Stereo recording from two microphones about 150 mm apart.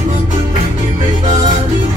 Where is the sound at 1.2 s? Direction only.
30° right (ahead or behind).